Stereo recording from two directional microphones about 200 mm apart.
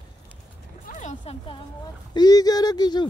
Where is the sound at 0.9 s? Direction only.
40° left (ahead or behind).